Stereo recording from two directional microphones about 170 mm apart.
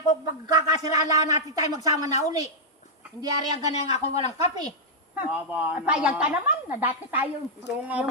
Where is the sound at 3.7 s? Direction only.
40° left (ahead or behind).